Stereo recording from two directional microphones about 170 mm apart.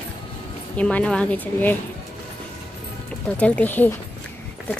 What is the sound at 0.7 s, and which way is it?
Speech, 5° left (ahead or behind).